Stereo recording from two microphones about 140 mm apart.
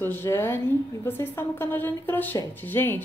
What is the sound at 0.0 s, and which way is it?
A woman's voice, 15° left (ahead or behind).